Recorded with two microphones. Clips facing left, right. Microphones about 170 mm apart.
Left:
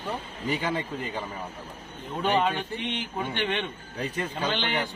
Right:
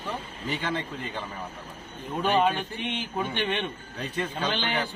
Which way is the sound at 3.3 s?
15° right (ahead or behind).